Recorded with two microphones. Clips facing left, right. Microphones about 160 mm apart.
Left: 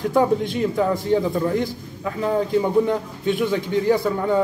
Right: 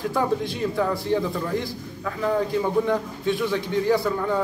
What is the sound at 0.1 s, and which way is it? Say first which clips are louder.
A man's voice: left 8 dB; 20° left (ahead or behind).